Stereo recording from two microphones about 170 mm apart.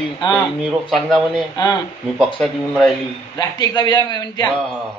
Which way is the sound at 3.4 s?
25° left (ahead or behind).